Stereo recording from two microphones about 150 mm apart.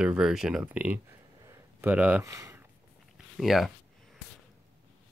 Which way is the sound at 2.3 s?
20° right (ahead or behind).